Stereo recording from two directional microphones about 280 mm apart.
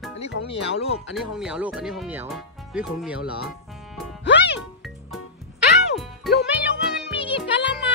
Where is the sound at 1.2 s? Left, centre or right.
Centre.